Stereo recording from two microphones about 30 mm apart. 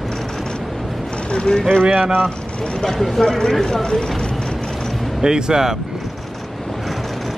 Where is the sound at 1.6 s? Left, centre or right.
Centre.